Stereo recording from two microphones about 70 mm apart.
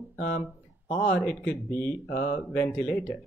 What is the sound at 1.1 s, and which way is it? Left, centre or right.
Speech, centre.